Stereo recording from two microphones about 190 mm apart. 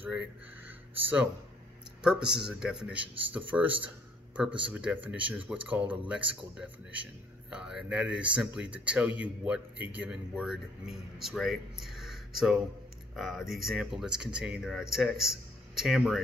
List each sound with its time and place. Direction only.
0.0 s speech: 10° right (ahead or behind)
2.0 s speech: 5° right (ahead or behind)
4.5 s speech: 25° right (ahead or behind)
4.7 s speech: 10° right (ahead or behind)